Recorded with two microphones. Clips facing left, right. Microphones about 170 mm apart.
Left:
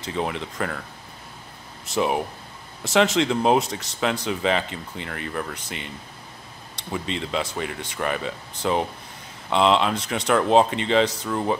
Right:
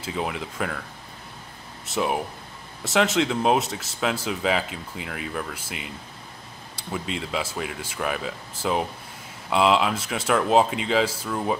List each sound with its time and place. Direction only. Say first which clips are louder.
0.0 s speech: left 2 dB; 5° right (ahead or behind)
1.9 s speech: left 2 dB; centre (ahead or behind)